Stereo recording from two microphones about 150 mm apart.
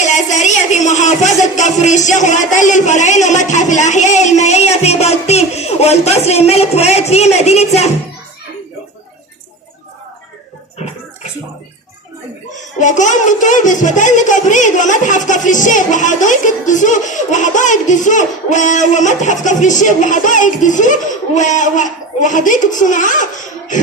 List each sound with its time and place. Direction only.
0.0 s a sound: 55° left (ahead or behind)
1.4 s speech: 50° left (ahead or behind)
12.5 s speech: 55° left (ahead or behind)